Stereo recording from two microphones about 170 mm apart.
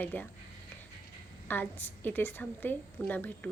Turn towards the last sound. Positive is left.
turn(degrees=10)  # may be behind; listen again after turning